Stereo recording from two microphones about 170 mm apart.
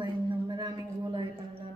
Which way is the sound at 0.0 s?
25° right (ahead or behind).